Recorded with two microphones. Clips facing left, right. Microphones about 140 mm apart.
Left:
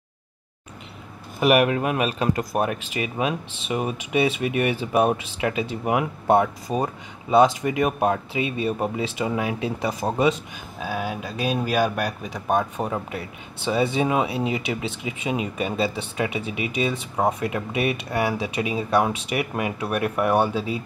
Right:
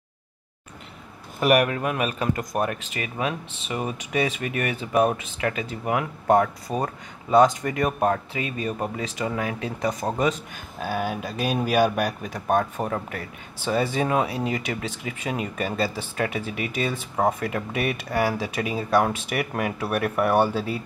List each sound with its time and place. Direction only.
1.4 s speech: 5° left (ahead or behind)
1.7 s speech: 15° left (ahead or behind)
2.0 s speech: 25° left (ahead or behind)
2.6 s speech: 15° left (ahead or behind); by 12.4 s 5° right (ahead or behind)
12.9 s speech: 10° left (ahead or behind)